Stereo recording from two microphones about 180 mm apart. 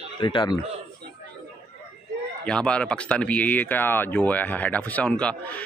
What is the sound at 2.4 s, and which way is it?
Speech, 5° left (ahead or behind).